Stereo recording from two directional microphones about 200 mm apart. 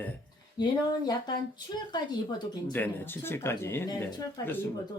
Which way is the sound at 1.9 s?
20° left (ahead or behind).